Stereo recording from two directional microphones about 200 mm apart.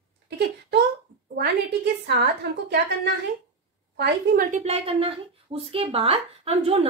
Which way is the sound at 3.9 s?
55° right (ahead or behind).